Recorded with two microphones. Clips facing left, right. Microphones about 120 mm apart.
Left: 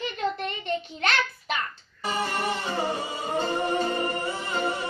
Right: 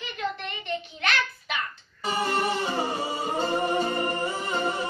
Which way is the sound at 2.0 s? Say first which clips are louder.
Right 2 dB; 15° right (ahead or behind).